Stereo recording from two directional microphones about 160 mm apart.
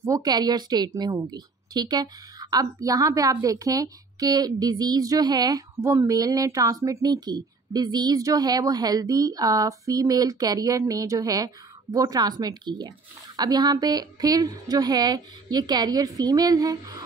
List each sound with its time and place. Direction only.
0.0 s a woman's voice: 25° right (ahead or behind)